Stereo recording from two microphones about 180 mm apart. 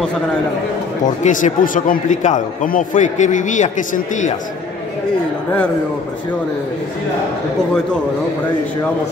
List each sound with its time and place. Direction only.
1.0 s a man's voice: 45° left (ahead or behind)